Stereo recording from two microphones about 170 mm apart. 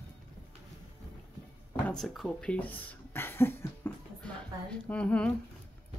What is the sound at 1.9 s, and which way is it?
Speech, centre (ahead or behind).